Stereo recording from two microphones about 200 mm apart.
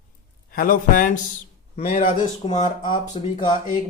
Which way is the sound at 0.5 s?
45° left (ahead or behind).